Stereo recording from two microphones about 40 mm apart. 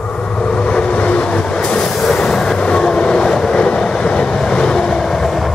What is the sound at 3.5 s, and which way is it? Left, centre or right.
Vehicle, left.